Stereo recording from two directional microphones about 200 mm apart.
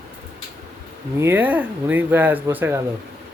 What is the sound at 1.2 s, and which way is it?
Speech, 10° right (ahead or behind).